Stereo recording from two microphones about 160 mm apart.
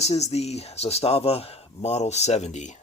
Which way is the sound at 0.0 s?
40° left (ahead or behind).